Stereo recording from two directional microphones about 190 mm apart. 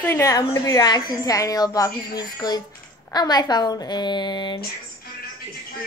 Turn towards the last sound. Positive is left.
turn(degrees=25)  # may be behind; listen again after turning